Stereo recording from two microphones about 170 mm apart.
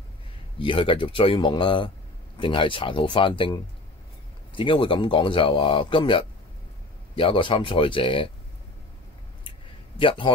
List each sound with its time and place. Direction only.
0.6 s speech: 30° left (ahead or behind)
9.9 s speech: 30° left (ahead or behind)